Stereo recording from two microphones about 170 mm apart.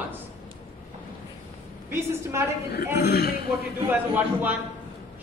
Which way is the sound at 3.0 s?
70° left (ahead or behind).